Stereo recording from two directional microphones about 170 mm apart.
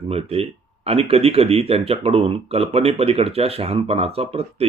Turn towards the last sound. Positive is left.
turn(degrees=-35)  # may be behind; listen again after turning